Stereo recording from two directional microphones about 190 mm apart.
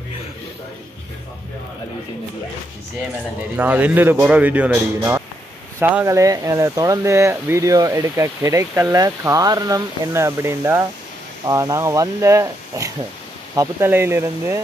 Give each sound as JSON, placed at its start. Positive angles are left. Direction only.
{"t": 3.5, "sound": "speech", "side_deg": -10}